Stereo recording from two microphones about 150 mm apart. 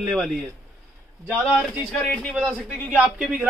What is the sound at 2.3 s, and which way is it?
A man's voice, 10° right (ahead or behind).